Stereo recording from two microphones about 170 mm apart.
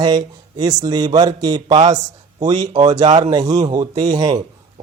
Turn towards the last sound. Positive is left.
turn(degrees=-25)  # may be behind; listen again after turning